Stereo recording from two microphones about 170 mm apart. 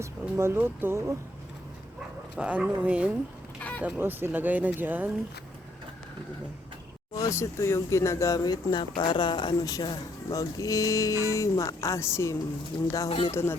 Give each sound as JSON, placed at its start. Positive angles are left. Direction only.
{"t": 0.0, "sound": "speech", "side_deg": -15}
{"t": 2.4, "sound": "speech", "side_deg": -5}
{"t": 3.6, "sound": "a sound", "side_deg": 10}
{"t": 3.8, "sound": "speech", "side_deg": -10}
{"t": 7.1, "sound": "speech", "side_deg": 20}
{"t": 13.1, "sound": "speech", "side_deg": 35}
{"t": 13.3, "sound": "speech", "side_deg": 15}